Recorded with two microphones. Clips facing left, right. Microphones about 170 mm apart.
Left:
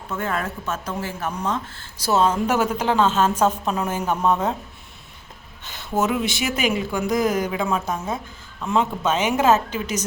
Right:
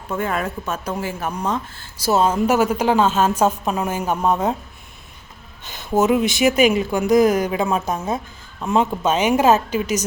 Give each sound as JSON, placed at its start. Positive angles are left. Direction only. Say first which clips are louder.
{"t": 0.2, "sound": "a woman's voice", "louder": "right 2 dB", "side_deg": -15}
{"t": 5.6, "sound": "a woman's voice", "louder": "right 5 dB", "side_deg": -15}